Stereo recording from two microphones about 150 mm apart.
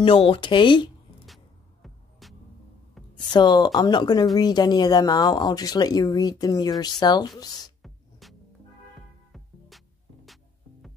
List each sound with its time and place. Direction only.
0.0 s speech: 35° left (ahead or behind)
1.2 s music: centre (ahead or behind)
3.2 s speech: 30° left (ahead or behind)
7.8 s music: centre (ahead or behind)
10.2 s music: centre (ahead or behind)